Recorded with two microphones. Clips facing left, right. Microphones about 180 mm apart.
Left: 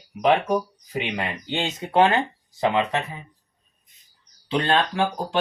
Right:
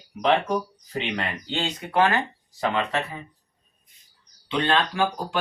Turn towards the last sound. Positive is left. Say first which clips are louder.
# left 1 dB
turn(degrees=30)  # may be behind; listen again after turning